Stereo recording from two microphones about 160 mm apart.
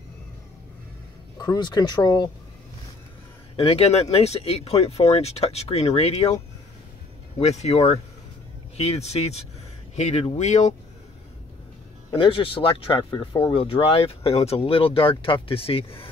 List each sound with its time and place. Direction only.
1.4 s speech: 25° left (ahead or behind)
3.5 s speech: 40° left (ahead or behind)
7.3 s speech: 40° left (ahead or behind)
12.1 s speech: 30° left (ahead or behind)